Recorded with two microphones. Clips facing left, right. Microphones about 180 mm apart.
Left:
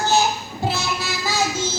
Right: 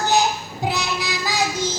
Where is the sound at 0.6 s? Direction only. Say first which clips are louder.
Even; 15° right (ahead or behind).